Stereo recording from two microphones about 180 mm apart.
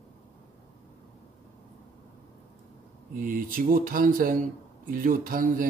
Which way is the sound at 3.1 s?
50° right (ahead or behind).